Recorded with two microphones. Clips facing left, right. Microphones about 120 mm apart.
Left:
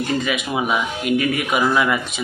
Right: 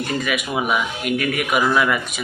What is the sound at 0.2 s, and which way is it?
Speech, 25° left (ahead or behind).